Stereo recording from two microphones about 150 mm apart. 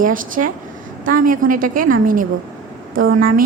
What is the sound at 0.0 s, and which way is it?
A woman's voice, 65° right (ahead or behind).